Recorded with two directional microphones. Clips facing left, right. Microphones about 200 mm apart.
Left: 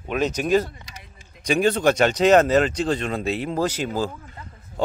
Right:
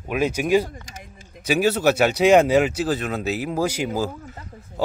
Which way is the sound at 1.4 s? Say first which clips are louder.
Even; 5° right (ahead or behind).